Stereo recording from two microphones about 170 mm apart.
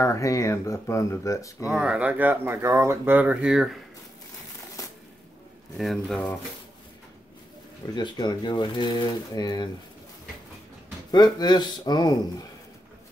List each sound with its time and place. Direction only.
0.0 s speech: 20° left (ahead or behind)
1.7 s speech: 5° right (ahead or behind)
5.8 s speech: centre (ahead or behind)
7.9 s speech: 25° left (ahead or behind)
11.1 s speech: 25° left (ahead or behind)